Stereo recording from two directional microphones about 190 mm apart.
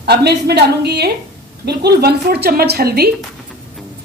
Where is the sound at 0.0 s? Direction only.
60° right (ahead or behind).